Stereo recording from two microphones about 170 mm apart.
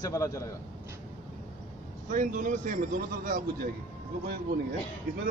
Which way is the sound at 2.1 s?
50° right (ahead or behind).